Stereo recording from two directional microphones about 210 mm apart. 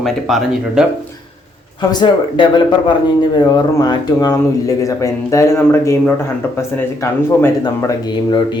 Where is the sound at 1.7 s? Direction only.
20° left (ahead or behind).